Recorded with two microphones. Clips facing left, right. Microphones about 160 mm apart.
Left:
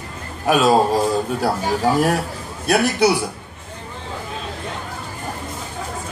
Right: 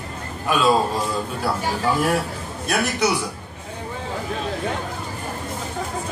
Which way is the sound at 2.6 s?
35° left (ahead or behind).